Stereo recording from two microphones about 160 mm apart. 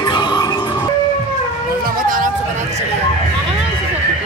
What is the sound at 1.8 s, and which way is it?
Vehicle, 55° right (ahead or behind).